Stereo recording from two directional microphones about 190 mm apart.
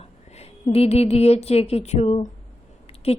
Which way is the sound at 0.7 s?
30° left (ahead or behind).